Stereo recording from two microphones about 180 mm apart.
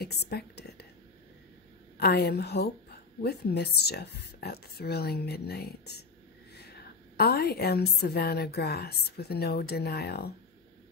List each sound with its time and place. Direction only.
0.0 s whispering: 65° left (ahead or behind)
2.0 s a woman's voice: 60° left (ahead or behind)
7.2 s a woman's voice: 60° left (ahead or behind)